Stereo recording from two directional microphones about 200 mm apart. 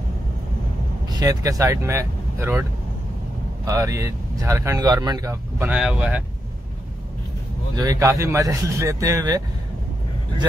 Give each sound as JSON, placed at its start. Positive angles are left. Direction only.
{"t": 1.0, "sound": "speech", "side_deg": -20}
{"t": 3.6, "sound": "speech", "side_deg": -15}
{"t": 7.7, "sound": "speech", "side_deg": -15}